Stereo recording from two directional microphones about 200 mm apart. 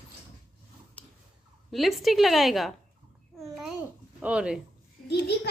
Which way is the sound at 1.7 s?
Centre (ahead or behind).